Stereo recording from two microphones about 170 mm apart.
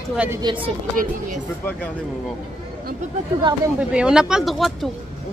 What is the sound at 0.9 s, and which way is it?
Speech, 50° right (ahead or behind).